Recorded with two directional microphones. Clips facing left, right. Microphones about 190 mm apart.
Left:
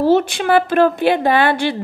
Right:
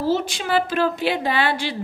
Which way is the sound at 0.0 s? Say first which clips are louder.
Left 8 dB; 60° left (ahead or behind).